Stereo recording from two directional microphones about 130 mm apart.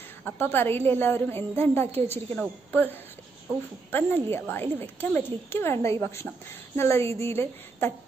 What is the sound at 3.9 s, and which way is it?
A woman's voice, 15° left (ahead or behind).